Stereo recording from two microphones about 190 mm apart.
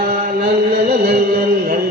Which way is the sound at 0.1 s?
50° right (ahead or behind).